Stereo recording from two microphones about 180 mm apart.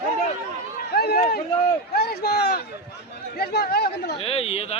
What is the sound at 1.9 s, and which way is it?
Speech, 60° left (ahead or behind).